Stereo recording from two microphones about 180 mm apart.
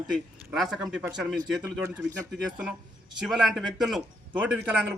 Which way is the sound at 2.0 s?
75° right (ahead or behind).